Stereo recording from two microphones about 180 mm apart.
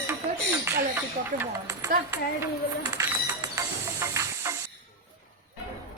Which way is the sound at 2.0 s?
20° right (ahead or behind).